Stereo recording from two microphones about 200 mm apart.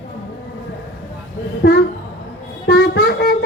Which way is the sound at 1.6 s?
55° left (ahead or behind).